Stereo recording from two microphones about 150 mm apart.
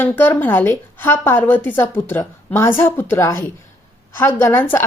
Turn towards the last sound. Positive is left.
turn(degrees=15)  # may be behind; listen again after turning